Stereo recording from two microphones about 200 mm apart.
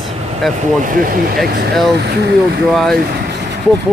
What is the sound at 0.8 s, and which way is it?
Speech, 45° right (ahead or behind).